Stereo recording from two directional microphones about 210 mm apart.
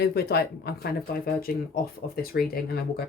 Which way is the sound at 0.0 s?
50° left (ahead or behind).